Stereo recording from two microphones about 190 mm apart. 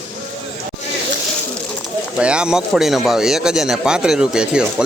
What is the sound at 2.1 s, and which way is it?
Speech, 5° right (ahead or behind).